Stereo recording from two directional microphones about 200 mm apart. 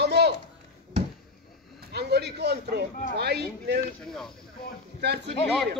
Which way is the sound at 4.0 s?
5° left (ahead or behind).